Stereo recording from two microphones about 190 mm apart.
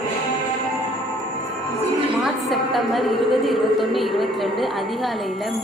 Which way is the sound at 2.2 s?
Centre (ahead or behind).